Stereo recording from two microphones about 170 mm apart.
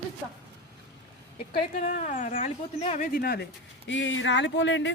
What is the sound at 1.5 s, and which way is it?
Speech, 50° left (ahead or behind).